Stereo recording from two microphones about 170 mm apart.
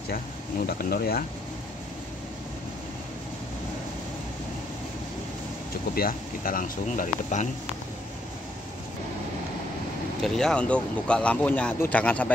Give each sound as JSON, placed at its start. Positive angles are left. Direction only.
{"t": 0.1, "sound": "speech", "side_deg": 60}
{"t": 5.9, "sound": "speech", "side_deg": 60}
{"t": 10.2, "sound": "speech", "side_deg": 5}